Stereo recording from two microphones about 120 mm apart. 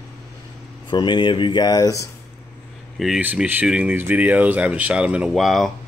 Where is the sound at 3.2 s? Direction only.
15° right (ahead or behind).